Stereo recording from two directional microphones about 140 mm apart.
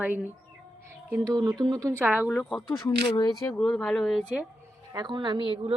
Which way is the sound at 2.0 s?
15° right (ahead or behind).